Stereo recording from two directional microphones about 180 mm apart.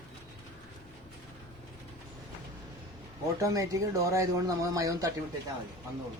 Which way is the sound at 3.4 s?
20° right (ahead or behind).